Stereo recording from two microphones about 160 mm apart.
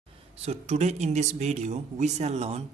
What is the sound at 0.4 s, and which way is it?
Speech, 45° right (ahead or behind).